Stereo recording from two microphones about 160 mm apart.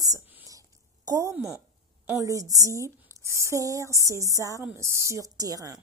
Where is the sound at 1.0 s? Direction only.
20° right (ahead or behind).